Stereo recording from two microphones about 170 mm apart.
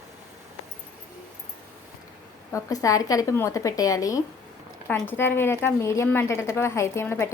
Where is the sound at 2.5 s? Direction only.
20° left (ahead or behind).